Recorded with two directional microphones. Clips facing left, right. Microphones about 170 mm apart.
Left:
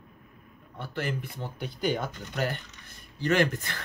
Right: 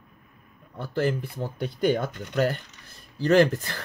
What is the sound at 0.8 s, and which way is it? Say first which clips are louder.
Speech: right 7 dB; 40° right (ahead or behind).